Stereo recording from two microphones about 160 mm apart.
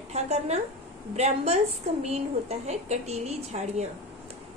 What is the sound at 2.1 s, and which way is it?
A woman's voice, 45° right (ahead or behind).